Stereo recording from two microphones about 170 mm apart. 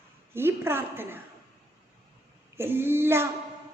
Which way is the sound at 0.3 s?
15° right (ahead or behind).